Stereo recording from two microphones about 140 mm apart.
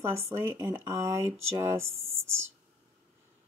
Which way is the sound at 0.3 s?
20° right (ahead or behind).